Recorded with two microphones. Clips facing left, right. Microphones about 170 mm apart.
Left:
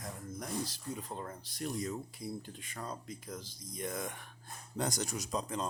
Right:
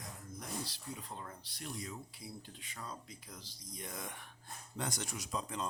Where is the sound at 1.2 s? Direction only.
45° left (ahead or behind).